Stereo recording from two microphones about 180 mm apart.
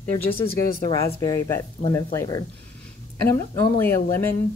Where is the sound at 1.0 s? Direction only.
20° left (ahead or behind).